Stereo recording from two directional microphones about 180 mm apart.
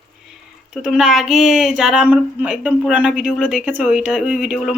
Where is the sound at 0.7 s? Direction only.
5° right (ahead or behind).